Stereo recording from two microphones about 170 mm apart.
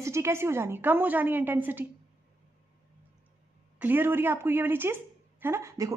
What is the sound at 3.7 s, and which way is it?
A woman's voice, 10° right (ahead or behind).